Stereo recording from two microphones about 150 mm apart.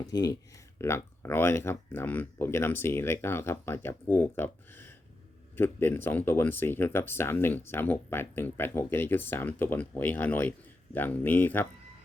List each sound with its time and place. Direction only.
0.1 s speech: 25° left (ahead or behind)